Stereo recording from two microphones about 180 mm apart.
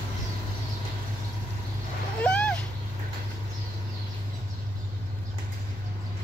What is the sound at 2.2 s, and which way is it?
Vehicle, 5° left (ahead or behind).